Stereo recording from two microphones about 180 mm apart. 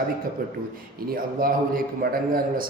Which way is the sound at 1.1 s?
55° right (ahead or behind).